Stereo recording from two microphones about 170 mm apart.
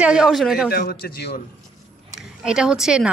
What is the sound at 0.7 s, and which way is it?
Speech, 65° left (ahead or behind).